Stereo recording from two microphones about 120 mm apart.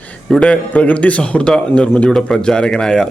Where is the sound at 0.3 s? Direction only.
5° left (ahead or behind).